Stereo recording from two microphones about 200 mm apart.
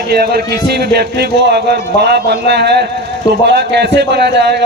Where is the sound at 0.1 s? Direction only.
50° right (ahead or behind).